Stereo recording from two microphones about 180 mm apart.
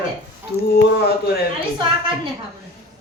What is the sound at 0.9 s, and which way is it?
Speech, 60° left (ahead or behind).